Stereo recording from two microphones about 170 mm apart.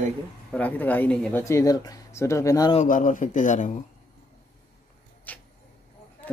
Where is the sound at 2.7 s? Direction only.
45° left (ahead or behind).